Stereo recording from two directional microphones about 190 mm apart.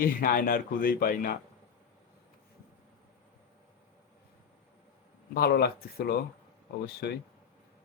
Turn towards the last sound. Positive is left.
turn(degrees=60)  # may be behind; listen again after turning